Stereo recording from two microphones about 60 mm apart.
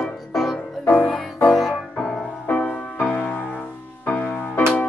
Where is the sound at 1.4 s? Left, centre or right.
Centre.